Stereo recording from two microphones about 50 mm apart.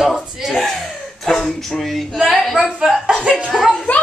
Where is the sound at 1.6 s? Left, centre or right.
Centre.